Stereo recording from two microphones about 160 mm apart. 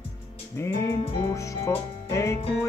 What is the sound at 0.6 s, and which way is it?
Music, 15° left (ahead or behind).